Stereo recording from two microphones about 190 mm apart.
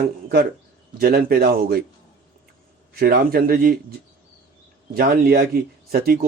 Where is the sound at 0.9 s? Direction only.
55° right (ahead or behind).